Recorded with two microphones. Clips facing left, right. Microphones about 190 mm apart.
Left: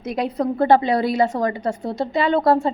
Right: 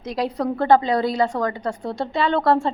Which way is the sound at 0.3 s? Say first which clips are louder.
Left 1 dB; 20° left (ahead or behind).